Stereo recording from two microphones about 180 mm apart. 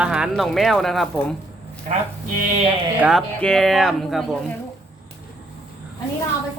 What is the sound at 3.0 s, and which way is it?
Speech, centre (ahead or behind).